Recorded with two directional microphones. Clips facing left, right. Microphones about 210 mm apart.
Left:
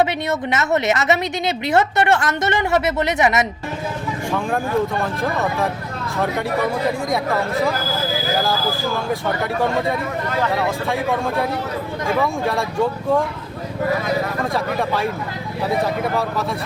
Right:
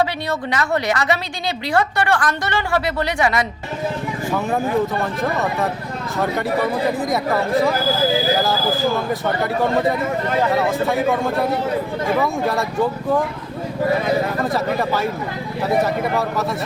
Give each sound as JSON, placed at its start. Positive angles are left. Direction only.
{"t": 0.0, "sound": "a woman's voice", "side_deg": 20}
{"t": 4.3, "sound": "speech", "side_deg": -5}
{"t": 9.0, "sound": "speech", "side_deg": 0}
{"t": 14.4, "sound": "speech", "side_deg": 0}